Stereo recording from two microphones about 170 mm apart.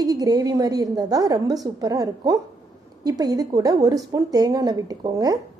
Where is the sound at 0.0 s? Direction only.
20° right (ahead or behind).